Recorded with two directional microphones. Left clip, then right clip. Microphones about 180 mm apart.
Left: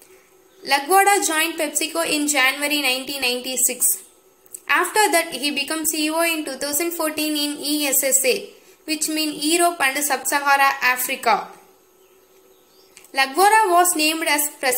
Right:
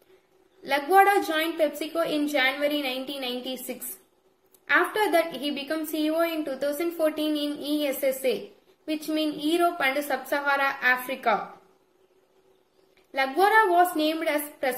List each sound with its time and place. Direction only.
0.6 s a woman's voice: 20° right (ahead or behind)
4.7 s a woman's voice: 15° right (ahead or behind)
9.5 s a woman's voice: 15° right (ahead or behind)
13.1 s a woman's voice: 15° right (ahead or behind)